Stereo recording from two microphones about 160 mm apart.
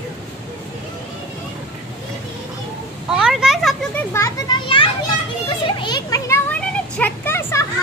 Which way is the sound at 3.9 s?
15° left (ahead or behind).